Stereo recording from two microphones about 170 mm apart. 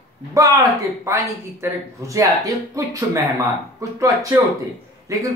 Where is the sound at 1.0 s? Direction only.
15° right (ahead or behind).